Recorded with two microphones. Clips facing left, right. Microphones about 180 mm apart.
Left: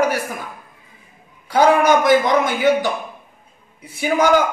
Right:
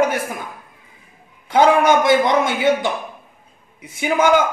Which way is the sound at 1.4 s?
25° right (ahead or behind).